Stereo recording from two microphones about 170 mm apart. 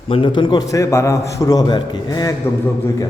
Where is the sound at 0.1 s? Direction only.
30° left (ahead or behind).